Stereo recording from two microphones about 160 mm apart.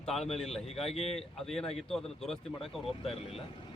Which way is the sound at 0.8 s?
40° left (ahead or behind).